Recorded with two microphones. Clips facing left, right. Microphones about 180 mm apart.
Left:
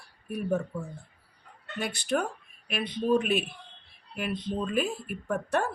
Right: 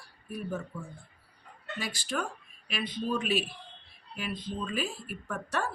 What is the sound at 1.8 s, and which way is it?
Speech, 60° left (ahead or behind).